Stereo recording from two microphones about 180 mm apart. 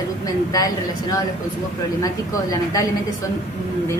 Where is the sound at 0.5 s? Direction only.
20° left (ahead or behind).